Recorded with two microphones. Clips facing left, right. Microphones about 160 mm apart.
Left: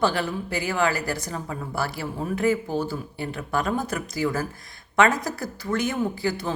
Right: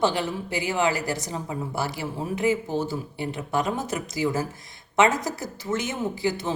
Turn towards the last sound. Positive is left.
turn(degrees=-20)  # may be behind; listen again after turning